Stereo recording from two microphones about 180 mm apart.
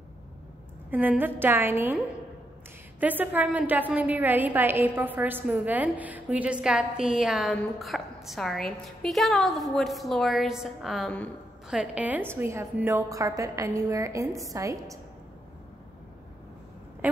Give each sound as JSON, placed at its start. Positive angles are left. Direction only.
{"t": 0.8, "sound": "a woman's voice", "side_deg": -10}
{"t": 3.0, "sound": "a woman's voice", "side_deg": -10}
{"t": 17.0, "sound": "a sound", "side_deg": -10}